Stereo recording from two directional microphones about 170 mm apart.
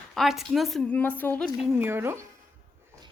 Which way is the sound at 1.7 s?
15° right (ahead or behind).